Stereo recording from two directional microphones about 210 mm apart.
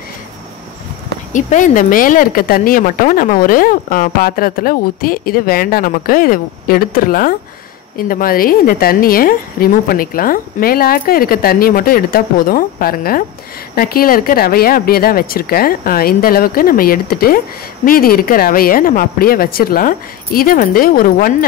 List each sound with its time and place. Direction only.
1.3 s speech: 40° left (ahead or behind)